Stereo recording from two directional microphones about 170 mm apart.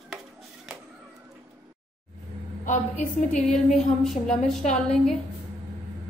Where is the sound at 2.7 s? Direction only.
45° left (ahead or behind).